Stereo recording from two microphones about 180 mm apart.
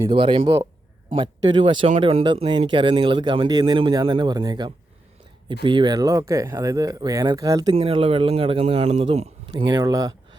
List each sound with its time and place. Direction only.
0.0 s speech: 25° right (ahead or behind)
9.5 s speech: 20° right (ahead or behind)